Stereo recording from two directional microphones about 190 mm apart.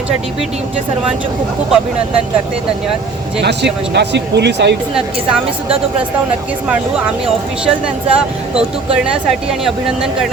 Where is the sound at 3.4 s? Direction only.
65° right (ahead or behind).